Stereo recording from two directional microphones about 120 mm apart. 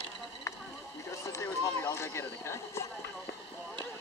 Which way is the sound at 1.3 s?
25° left (ahead or behind).